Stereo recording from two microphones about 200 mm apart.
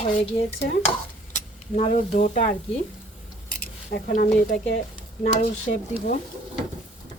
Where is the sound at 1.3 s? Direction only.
40° left (ahead or behind).